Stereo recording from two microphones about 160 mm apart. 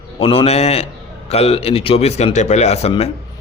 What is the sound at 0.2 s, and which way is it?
A man's voice, 35° left (ahead or behind).